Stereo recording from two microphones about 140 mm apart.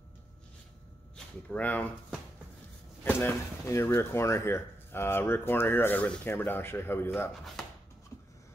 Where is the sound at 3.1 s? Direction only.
15° left (ahead or behind).